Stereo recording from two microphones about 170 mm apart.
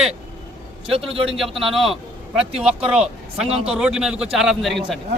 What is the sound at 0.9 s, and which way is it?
Speech, 35° right (ahead or behind).